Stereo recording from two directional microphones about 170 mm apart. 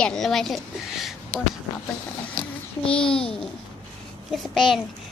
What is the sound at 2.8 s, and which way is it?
Speech, 30° left (ahead or behind).